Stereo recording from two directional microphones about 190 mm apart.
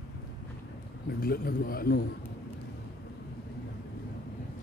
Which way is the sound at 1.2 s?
55° left (ahead or behind).